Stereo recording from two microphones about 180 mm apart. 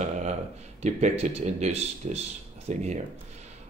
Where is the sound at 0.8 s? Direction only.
40° right (ahead or behind).